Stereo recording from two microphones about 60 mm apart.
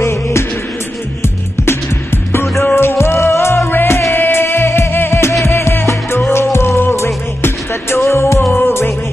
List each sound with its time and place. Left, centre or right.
0.0 s music: left
2.6 s music: left